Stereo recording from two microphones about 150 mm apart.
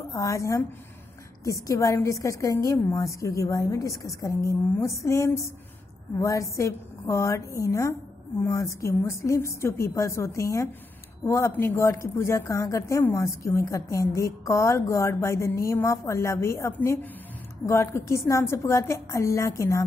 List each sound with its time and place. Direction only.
0.1 s a woman's voice: 20° left (ahead or behind)